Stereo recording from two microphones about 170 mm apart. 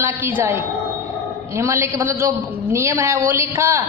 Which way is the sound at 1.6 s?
15° right (ahead or behind).